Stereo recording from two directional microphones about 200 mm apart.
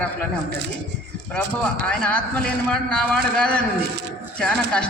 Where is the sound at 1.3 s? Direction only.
5° left (ahead or behind).